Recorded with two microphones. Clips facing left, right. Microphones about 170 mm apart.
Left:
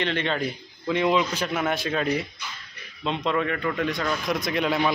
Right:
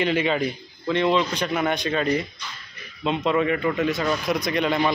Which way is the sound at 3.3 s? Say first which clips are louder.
Right 4 dB; 5° right (ahead or behind).